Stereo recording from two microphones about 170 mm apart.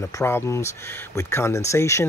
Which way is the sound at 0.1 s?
15° left (ahead or behind).